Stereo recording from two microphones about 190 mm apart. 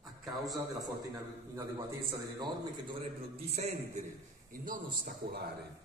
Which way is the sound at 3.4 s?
35° right (ahead or behind).